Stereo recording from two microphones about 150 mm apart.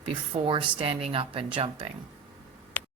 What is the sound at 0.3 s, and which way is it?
Speech, 35° right (ahead or behind).